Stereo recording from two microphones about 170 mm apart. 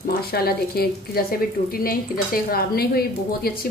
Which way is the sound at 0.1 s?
65° left (ahead or behind).